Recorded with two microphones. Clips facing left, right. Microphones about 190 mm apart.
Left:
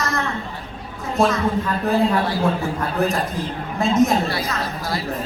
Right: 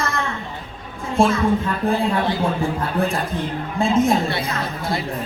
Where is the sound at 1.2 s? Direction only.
30° right (ahead or behind).